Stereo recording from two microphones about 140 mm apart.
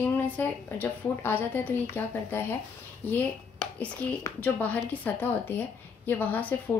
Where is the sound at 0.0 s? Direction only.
15° left (ahead or behind).